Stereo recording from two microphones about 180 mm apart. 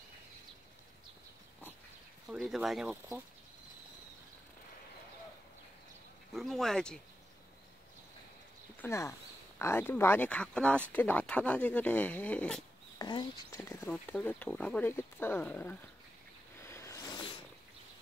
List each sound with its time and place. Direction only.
2.2 s speech: centre (ahead or behind)
6.3 s speech: centre (ahead or behind)
8.8 s speech: 15° left (ahead or behind)
13.0 s speech: 25° left (ahead or behind); by 15.8 s 10° left (ahead or behind)
16.6 s a sound: 15° left (ahead or behind)